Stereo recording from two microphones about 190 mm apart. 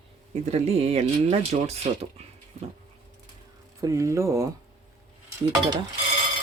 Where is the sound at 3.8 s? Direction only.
15° right (ahead or behind).